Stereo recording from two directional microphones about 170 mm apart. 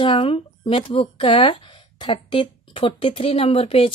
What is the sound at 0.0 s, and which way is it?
Speech, 30° left (ahead or behind).